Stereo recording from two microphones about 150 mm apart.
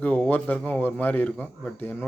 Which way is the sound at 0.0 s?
10° left (ahead or behind).